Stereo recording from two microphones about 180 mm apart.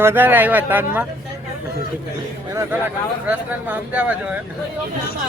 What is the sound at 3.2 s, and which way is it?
Speech, 10° right (ahead or behind).